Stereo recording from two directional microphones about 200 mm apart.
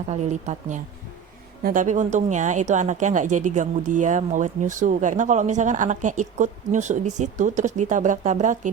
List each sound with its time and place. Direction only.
0.1 s a woman's voice: 35° right (ahead or behind)